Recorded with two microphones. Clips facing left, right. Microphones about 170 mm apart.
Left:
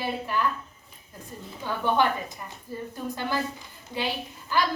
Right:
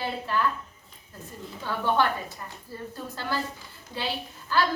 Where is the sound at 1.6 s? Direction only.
15° left (ahead or behind).